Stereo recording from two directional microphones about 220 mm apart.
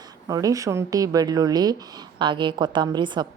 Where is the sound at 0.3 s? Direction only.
15° right (ahead or behind).